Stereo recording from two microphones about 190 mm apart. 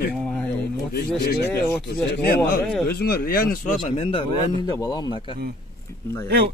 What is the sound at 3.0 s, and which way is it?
Speech, 50° left (ahead or behind).